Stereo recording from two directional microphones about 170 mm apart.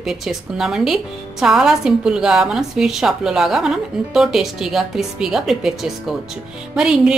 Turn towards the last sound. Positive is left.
turn(degrees=-5)  # may be behind; listen again after turning